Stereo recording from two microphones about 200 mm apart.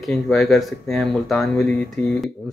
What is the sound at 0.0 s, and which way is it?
Speech, centre (ahead or behind).